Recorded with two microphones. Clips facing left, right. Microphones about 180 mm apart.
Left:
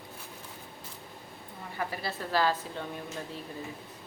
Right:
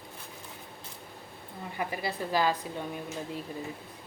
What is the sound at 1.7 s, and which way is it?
A woman's voice, 15° right (ahead or behind).